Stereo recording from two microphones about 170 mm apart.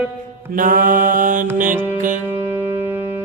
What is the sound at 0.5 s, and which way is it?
Mantra, 50° right (ahead or behind).